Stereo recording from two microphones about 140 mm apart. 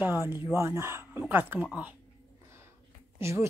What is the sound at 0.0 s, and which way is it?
A woman's voice, 15° right (ahead or behind).